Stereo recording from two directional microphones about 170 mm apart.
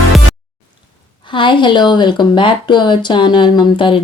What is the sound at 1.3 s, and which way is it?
Speech, 30° left (ahead or behind).